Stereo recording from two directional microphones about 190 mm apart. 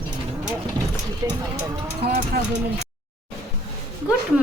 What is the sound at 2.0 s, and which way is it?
Speech, 55° right (ahead or behind).